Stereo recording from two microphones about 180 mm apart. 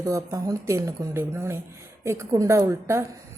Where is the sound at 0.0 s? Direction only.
20° right (ahead or behind).